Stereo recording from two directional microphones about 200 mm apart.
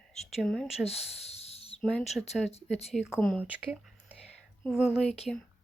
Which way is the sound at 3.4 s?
5° right (ahead or behind).